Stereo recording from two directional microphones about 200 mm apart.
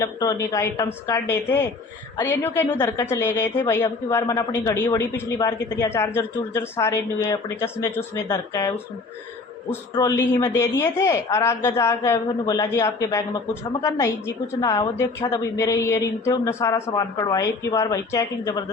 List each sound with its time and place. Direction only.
0.0 s a woman's voice: 15° left (ahead or behind)
9.9 s a woman's voice: 20° left (ahead or behind)